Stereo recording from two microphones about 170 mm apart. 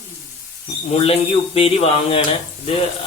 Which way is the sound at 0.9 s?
35° left (ahead or behind).